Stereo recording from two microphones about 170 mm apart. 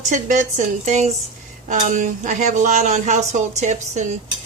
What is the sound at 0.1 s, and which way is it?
A woman's voice, 45° right (ahead or behind).